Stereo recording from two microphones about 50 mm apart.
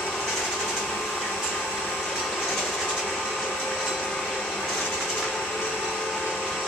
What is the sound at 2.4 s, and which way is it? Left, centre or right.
Vehicle, centre.